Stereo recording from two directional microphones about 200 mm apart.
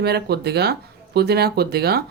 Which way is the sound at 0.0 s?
55° right (ahead or behind).